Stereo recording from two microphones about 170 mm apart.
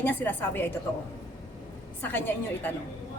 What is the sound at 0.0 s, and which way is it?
Speech, 10° left (ahead or behind).